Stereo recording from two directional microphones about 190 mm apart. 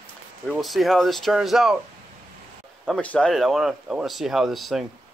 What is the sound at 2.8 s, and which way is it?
Speech, 5° left (ahead or behind).